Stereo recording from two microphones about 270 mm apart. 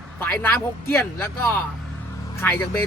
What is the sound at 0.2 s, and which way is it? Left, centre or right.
Speech, centre.